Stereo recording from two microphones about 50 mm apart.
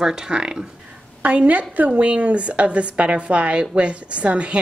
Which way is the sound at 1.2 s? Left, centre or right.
Right.